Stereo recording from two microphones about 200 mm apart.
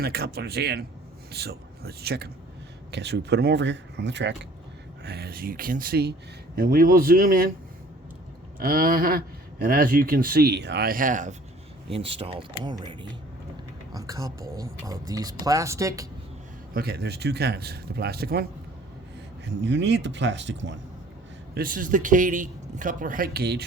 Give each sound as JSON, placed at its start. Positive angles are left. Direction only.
{"t": 0.0, "sound": "speech", "side_deg": -50}
{"t": 8.5, "sound": "speech", "side_deg": -45}
{"t": 11.9, "sound": "speech", "side_deg": -30}
{"t": 16.7, "sound": "speech", "side_deg": -50}
{"t": 19.5, "sound": "speech", "side_deg": -60}
{"t": 21.5, "sound": "speech", "side_deg": -45}